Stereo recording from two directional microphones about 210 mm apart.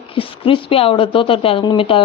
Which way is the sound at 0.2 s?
25° left (ahead or behind).